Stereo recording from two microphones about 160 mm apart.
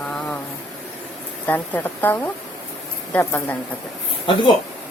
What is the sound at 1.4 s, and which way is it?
A woman's voice, 10° left (ahead or behind).